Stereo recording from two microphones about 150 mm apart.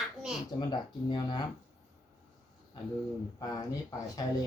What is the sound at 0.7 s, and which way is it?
Speech, 30° left (ahead or behind).